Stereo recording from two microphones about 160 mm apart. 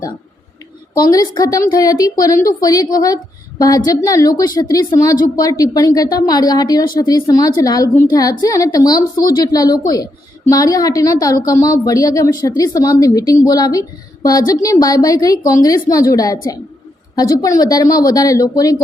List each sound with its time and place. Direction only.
0.9 s a woman's voice: 25° left (ahead or behind)